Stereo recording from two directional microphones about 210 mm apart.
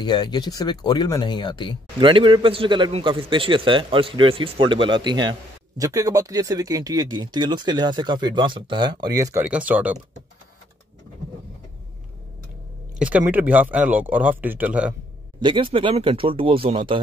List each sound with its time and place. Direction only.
0.0 s speech: 20° left (ahead or behind)
2.0 s speech: 25° right (ahead or behind); by 9.9 s 5° right (ahead or behind)
13.0 s speech: 5° right (ahead or behind)
15.4 s speech: 25° right (ahead or behind)